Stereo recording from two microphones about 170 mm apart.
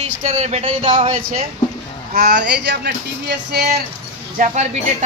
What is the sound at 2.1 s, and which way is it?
Speech, 70° right (ahead or behind).